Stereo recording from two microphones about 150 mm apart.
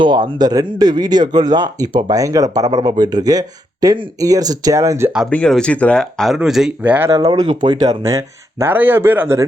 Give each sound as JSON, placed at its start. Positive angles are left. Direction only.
{"t": 0.0, "sound": "speech", "side_deg": -30}
{"t": 5.3, "sound": "speech", "side_deg": 5}
{"t": 7.1, "sound": "speech", "side_deg": -25}